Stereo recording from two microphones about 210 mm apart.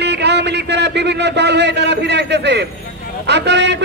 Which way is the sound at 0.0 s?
55° right (ahead or behind).